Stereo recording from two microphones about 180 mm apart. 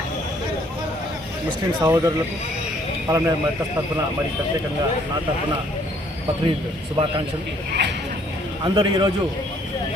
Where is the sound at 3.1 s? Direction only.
20° right (ahead or behind).